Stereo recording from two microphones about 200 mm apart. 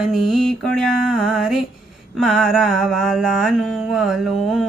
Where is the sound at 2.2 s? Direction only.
Centre (ahead or behind).